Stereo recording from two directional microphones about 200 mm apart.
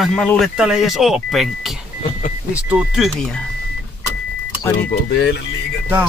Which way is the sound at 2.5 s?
5° right (ahead or behind).